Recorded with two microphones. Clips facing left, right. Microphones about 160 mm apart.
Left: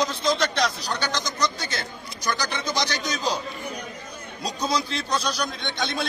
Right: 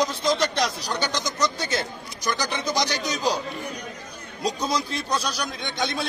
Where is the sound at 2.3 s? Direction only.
15° right (ahead or behind).